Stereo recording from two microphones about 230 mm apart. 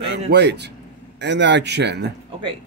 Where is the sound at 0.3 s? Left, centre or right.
Right.